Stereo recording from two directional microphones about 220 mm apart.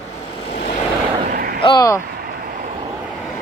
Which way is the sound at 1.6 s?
20° left (ahead or behind).